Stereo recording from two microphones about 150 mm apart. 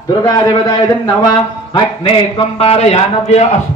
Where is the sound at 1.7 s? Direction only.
35° left (ahead or behind).